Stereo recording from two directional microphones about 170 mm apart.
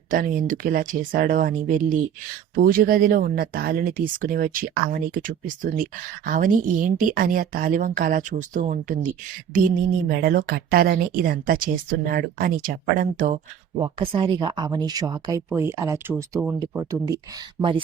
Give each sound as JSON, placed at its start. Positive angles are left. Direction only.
{"t": 0.1, "sound": "speech", "side_deg": -50}
{"t": 13.7, "sound": "speech", "side_deg": -30}